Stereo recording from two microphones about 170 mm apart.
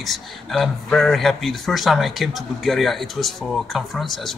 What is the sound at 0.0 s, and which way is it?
A man's voice, centre (ahead or behind).